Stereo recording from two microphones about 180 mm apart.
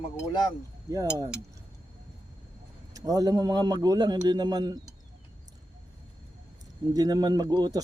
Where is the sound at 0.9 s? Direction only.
20° right (ahead or behind).